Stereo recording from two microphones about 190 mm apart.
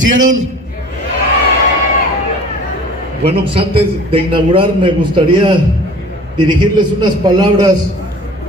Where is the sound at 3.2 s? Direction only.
30° right (ahead or behind).